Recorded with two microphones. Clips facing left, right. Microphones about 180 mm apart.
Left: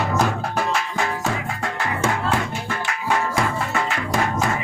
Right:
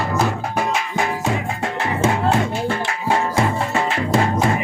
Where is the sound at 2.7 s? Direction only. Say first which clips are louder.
Right 3 dB; 30° right (ahead or behind).